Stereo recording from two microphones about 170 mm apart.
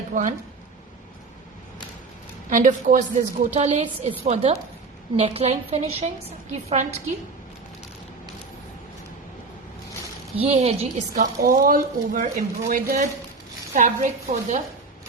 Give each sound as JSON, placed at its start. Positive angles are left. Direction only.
{"t": 0.1, "sound": "speech", "side_deg": -50}
{"t": 2.5, "sound": "a woman's voice", "side_deg": -50}
{"t": 10.3, "sound": "a woman's voice", "side_deg": -35}
{"t": 11.1, "sound": "a woman's voice", "side_deg": -55}